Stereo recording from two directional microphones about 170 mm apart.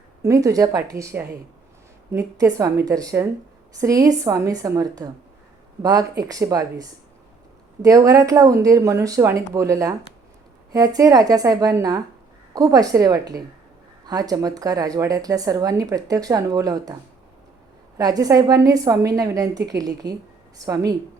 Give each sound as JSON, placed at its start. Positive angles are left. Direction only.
{"t": 0.2, "sound": "speech", "side_deg": -20}